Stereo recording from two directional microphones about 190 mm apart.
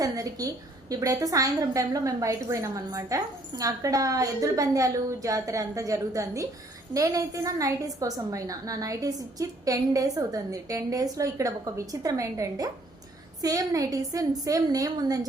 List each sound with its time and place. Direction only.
0.0 s a woman's voice: 20° right (ahead or behind)